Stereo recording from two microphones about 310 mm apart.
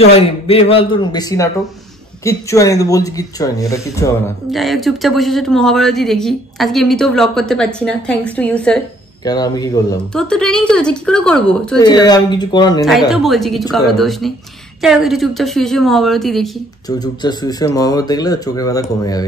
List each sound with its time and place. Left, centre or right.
0.0 s speech: centre
11.8 s speech: centre
13.1 s speech: centre
16.8 s speech: centre